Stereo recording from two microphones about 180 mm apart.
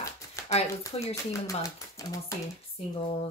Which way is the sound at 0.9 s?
30° left (ahead or behind).